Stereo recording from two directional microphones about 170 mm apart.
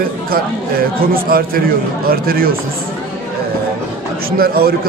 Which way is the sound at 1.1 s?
60° right (ahead or behind).